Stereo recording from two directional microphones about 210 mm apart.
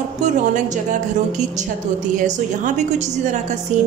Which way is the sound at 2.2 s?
35° right (ahead or behind).